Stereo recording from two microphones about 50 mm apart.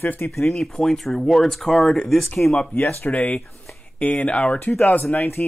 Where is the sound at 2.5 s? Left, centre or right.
Left.